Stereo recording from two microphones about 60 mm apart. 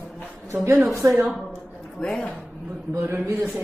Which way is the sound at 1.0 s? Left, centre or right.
Right.